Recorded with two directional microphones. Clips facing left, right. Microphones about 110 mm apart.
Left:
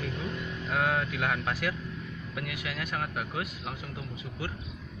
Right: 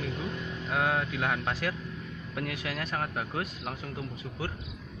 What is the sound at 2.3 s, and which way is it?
Speech, 35° right (ahead or behind).